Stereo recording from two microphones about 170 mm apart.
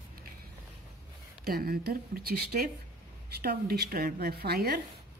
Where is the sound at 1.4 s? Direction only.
60° right (ahead or behind).